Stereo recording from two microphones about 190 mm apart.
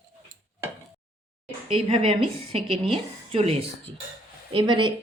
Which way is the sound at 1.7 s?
30° right (ahead or behind).